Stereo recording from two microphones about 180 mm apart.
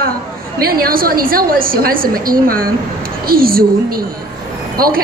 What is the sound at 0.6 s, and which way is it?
A woman's voice, 55° right (ahead or behind).